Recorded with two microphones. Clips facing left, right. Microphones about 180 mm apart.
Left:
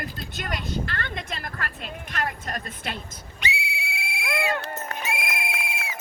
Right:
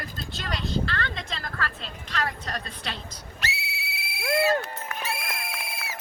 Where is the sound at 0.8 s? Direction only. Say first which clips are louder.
Right 1 dB; 50° left (ahead or behind).